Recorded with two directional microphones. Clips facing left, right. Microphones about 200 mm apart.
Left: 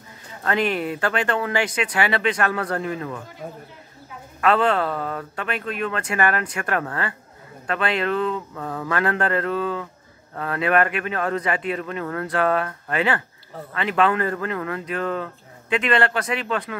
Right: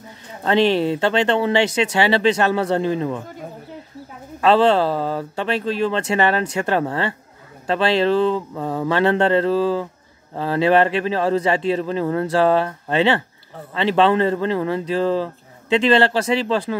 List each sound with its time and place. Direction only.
0.5 s speech: 25° right (ahead or behind)
4.4 s speech: 30° right (ahead or behind)